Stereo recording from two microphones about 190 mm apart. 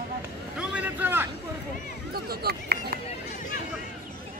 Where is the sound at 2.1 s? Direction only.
55° right (ahead or behind).